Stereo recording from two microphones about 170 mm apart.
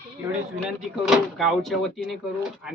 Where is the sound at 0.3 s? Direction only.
5° right (ahead or behind).